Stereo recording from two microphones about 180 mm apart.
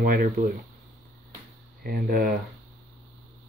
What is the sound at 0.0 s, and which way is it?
Speech, 50° right (ahead or behind).